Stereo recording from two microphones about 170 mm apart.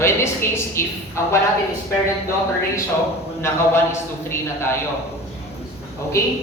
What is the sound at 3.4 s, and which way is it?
Speech, 15° left (ahead or behind).